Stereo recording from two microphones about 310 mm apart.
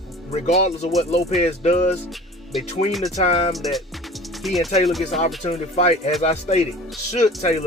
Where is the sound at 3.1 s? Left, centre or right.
Centre.